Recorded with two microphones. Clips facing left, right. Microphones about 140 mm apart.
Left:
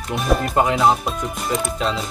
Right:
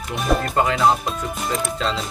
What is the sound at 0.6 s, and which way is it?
Speech, 20° left (ahead or behind).